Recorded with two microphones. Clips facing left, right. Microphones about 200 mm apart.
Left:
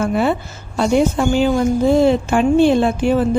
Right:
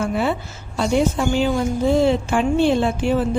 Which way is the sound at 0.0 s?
50° left (ahead or behind).